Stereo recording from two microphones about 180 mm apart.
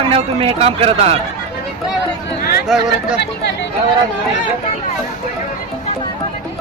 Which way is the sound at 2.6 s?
Centre (ahead or behind).